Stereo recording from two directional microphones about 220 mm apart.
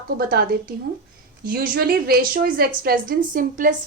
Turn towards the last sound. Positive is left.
turn(degrees=-40)  # may be behind; listen again after turning